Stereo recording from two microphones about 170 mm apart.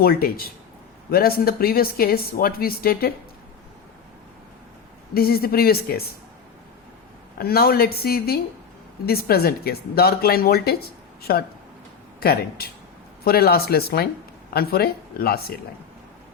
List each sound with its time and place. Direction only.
0.0 s speech: 60° left (ahead or behind)
5.1 s speech: 65° left (ahead or behind)
7.3 s speech: 65° left (ahead or behind)